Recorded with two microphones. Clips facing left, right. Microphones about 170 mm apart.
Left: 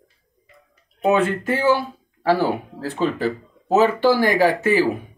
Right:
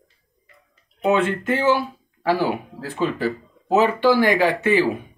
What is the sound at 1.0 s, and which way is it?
Speech, 25° right (ahead or behind).